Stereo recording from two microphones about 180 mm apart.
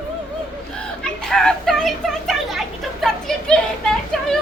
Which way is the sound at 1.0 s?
Centre (ahead or behind).